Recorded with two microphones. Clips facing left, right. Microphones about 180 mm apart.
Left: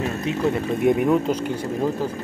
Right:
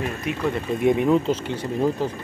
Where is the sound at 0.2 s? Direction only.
25° left (ahead or behind).